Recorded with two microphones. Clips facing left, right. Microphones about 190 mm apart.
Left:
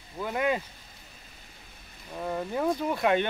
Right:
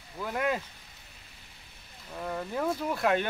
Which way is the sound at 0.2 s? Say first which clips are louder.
Left 2 dB; centre (ahead or behind).